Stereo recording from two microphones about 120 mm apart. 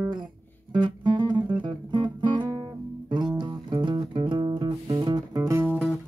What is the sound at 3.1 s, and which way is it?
Music, 40° right (ahead or behind).